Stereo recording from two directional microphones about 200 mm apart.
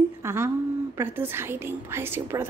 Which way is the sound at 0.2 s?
15° right (ahead or behind).